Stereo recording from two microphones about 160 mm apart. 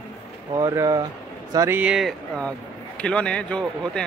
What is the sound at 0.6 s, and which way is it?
Speech, 20° right (ahead or behind).